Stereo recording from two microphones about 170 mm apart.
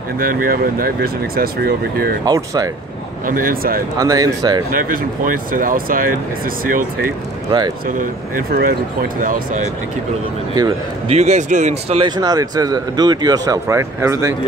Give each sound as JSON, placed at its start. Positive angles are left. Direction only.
{"t": 0.2, "sound": "speech", "side_deg": -60}
{"t": 2.2, "sound": "speech", "side_deg": -20}
{"t": 3.3, "sound": "speech", "side_deg": -55}
{"t": 4.0, "sound": "speech", "side_deg": -20}
{"t": 4.6, "sound": "speech", "side_deg": -55}
{"t": 11.1, "sound": "speech", "side_deg": -40}
{"t": 12.0, "sound": "speech", "side_deg": -25}